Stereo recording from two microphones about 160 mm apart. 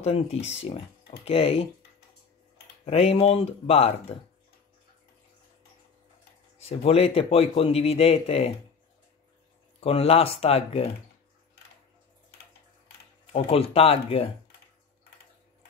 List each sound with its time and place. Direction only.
0.0 s a man's voice: 40° left (ahead or behind)
2.8 s a man's voice: 40° left (ahead or behind)
6.6 s a man's voice: 40° left (ahead or behind)
9.8 s a man's voice: 40° left (ahead or behind)
13.3 s a man's voice: 35° left (ahead or behind)